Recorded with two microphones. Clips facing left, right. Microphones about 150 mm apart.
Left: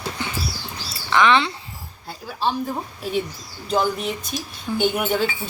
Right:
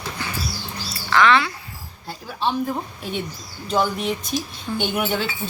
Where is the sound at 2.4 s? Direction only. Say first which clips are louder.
Right 1 dB; centre (ahead or behind).